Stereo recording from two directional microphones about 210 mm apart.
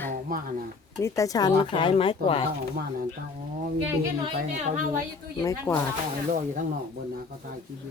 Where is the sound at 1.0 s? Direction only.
15° left (ahead or behind).